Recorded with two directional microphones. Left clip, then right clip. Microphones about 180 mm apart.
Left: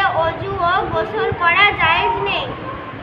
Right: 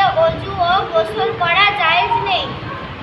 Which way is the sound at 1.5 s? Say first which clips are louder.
Left 1 dB; 10° right (ahead or behind).